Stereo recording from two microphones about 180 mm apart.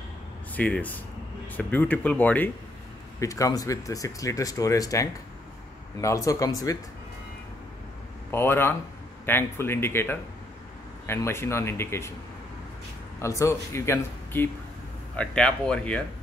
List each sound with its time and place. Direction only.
0.6 s speech: 10° left (ahead or behind)
8.3 s speech: 15° left (ahead or behind)
13.2 s speech: 15° left (ahead or behind)